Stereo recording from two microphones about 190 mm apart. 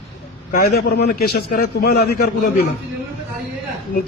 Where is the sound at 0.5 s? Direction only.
55° left (ahead or behind).